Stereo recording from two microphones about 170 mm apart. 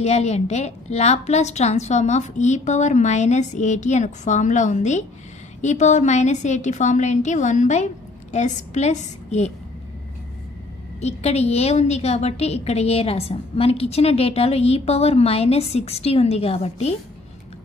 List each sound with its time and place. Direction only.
0.0 s a woman's voice: 40° left (ahead or behind)
11.0 s a woman's voice: 40° left (ahead or behind)